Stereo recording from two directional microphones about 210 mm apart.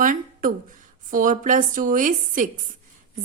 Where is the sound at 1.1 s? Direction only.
40° right (ahead or behind).